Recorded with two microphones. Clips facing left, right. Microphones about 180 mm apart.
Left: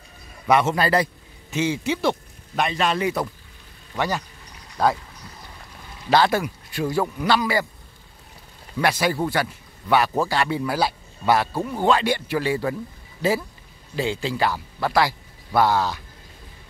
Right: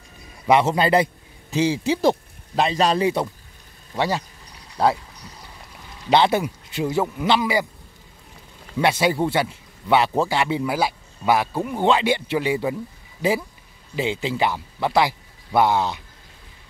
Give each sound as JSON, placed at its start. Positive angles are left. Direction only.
{"t": 0.5, "sound": "a man's voice", "side_deg": -25}
{"t": 1.5, "sound": "a man's voice", "side_deg": -35}
{"t": 6.0, "sound": "a man's voice", "side_deg": -20}
{"t": 8.8, "sound": "a man's voice", "side_deg": -25}
{"t": 13.9, "sound": "speech", "side_deg": -15}